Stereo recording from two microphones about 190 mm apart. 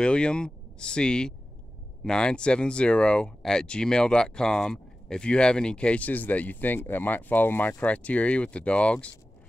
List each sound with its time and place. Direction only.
0.0 s speech: 5° left (ahead or behind)